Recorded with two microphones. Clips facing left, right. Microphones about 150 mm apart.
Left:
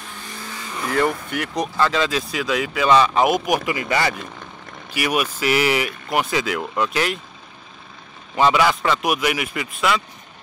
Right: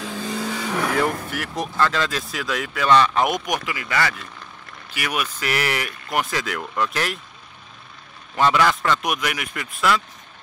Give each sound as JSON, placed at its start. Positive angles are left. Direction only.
{"t": 0.0, "sound": "vehicle", "side_deg": -90}
{"t": 0.9, "sound": "speech", "side_deg": 0}
{"t": 3.6, "sound": "speech", "side_deg": 25}
{"t": 4.9, "sound": "speech", "side_deg": 10}
{"t": 8.4, "sound": "speech", "side_deg": 5}